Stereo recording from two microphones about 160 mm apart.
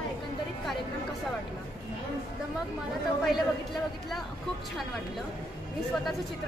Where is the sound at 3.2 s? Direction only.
Centre (ahead or behind).